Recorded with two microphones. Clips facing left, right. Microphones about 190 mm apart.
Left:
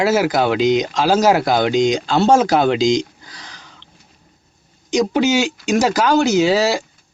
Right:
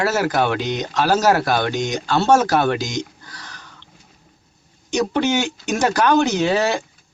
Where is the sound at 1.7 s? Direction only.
90° left.